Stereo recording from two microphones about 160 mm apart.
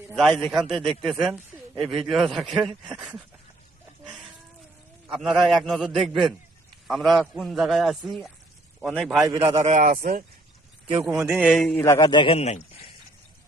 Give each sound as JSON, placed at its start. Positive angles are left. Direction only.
{"t": 0.2, "sound": "a man's voice", "side_deg": 0}
{"t": 5.0, "sound": "a man's voice", "side_deg": -5}
{"t": 9.2, "sound": "a man's voice", "side_deg": -20}
{"t": 9.6, "sound": "speech", "side_deg": -50}
{"t": 11.0, "sound": "a man's voice", "side_deg": 0}
{"t": 11.8, "sound": "a man's voice", "side_deg": 20}